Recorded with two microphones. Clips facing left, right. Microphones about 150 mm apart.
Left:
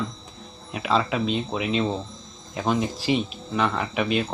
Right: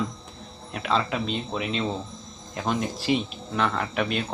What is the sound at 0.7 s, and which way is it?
Speech, 5° left (ahead or behind).